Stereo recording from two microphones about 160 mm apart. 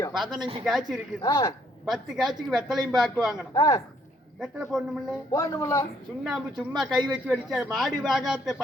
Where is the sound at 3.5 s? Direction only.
20° left (ahead or behind).